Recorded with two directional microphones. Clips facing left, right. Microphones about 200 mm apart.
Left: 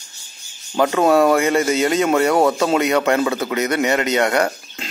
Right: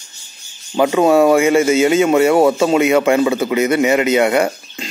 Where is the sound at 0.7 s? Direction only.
5° right (ahead or behind).